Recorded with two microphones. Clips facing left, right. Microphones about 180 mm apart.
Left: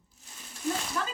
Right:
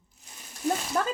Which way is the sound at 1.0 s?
45° right (ahead or behind).